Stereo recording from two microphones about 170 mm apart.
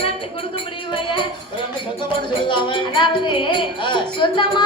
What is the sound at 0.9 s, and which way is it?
Speech, 30° left (ahead or behind).